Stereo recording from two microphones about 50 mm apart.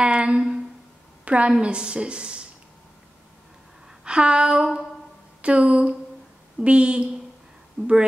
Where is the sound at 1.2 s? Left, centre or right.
Right.